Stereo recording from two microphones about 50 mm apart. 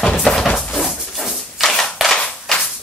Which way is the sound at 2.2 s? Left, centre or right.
Centre.